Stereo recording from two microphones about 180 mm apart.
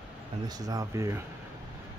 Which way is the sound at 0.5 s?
20° right (ahead or behind).